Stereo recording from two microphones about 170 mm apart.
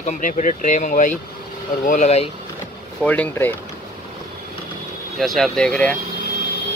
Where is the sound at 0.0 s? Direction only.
50° left (ahead or behind).